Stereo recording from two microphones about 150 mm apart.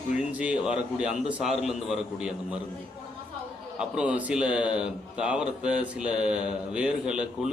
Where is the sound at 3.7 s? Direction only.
5° right (ahead or behind).